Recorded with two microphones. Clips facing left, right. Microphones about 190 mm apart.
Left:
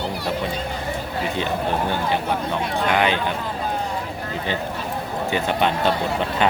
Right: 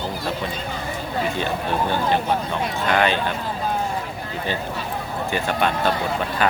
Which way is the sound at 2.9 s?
15° left (ahead or behind).